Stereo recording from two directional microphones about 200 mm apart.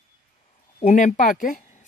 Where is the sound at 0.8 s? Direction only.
40° left (ahead or behind).